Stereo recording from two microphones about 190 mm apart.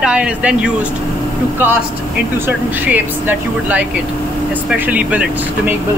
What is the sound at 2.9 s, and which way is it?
Speech, 10° right (ahead or behind).